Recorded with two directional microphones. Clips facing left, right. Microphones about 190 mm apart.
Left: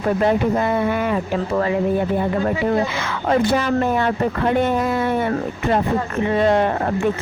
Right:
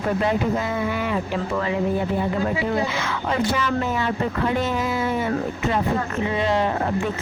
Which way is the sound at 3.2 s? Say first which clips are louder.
Left 6 dB; 50° left (ahead or behind).